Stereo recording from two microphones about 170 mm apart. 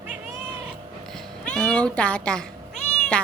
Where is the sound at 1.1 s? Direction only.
5° left (ahead or behind).